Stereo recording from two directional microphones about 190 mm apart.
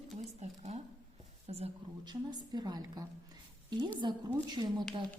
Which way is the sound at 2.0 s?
20° right (ahead or behind).